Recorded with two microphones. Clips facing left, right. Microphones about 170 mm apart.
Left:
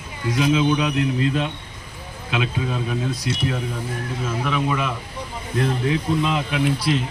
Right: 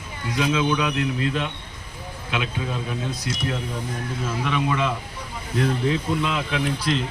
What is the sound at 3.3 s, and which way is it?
Speech, 25° left (ahead or behind).